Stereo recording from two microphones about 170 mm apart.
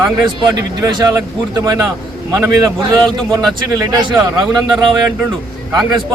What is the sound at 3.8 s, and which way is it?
A man's voice, 25° right (ahead or behind).